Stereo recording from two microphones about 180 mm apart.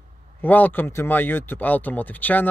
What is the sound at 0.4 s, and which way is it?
Speech, 10° left (ahead or behind).